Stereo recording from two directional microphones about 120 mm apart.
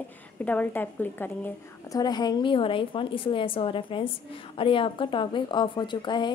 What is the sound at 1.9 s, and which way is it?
A woman's voice, 35° left (ahead or behind).